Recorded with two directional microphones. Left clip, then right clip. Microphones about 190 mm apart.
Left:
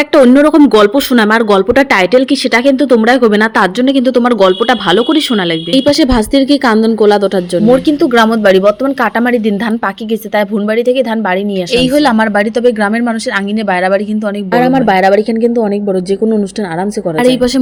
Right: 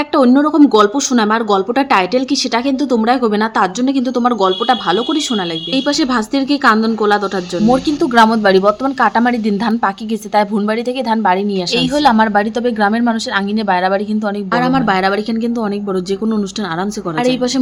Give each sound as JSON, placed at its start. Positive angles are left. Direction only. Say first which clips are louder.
{"t": 0.1, "sound": "speech", "louder": "left 6 dB", "side_deg": 15}
{"t": 7.9, "sound": "a woman's voice", "louder": "left 2 dB", "side_deg": 10}
{"t": 17.2, "sound": "speech", "louder": "left 5 dB", "side_deg": 30}